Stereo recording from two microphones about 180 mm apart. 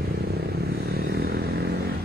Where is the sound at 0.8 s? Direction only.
60° right (ahead or behind).